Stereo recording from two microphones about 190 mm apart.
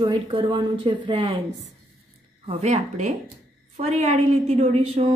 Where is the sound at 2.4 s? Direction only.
35° right (ahead or behind).